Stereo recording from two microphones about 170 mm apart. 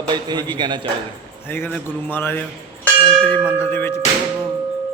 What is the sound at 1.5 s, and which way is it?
A man's voice, 10° left (ahead or behind).